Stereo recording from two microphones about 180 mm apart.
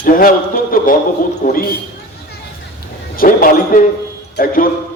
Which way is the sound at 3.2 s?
50° left (ahead or behind).